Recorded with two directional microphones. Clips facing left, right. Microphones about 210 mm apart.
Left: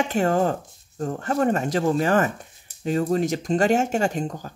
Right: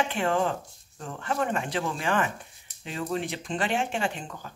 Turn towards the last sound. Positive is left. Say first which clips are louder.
# left 7 dB
turn(degrees=40)  # may be behind; listen again after turning